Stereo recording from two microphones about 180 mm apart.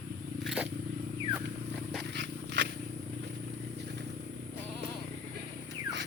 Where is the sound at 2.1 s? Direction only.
70° right (ahead or behind).